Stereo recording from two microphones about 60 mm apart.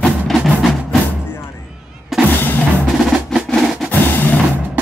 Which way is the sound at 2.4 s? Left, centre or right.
Left.